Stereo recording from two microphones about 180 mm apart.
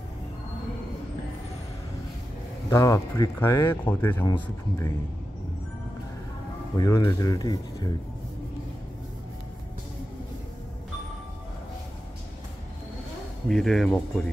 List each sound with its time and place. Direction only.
2.7 s speech: 15° left (ahead or behind)
6.8 s speech: 20° left (ahead or behind)
13.5 s speech: centre (ahead or behind)